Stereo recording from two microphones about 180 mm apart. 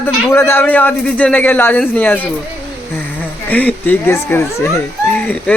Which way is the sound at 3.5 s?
10° left (ahead or behind).